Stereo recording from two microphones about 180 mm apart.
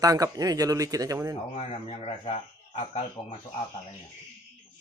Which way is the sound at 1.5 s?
35° left (ahead or behind).